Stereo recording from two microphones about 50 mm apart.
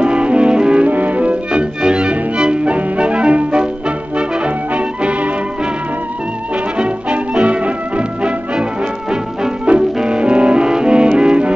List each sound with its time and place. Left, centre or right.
0.0 s music: right
0.8 s music: right
4.2 s brass instrument: right
6.5 s music: right
9.1 s brass instrument: centre